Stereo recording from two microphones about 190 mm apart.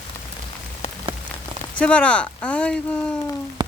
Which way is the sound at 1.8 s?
5° left (ahead or behind).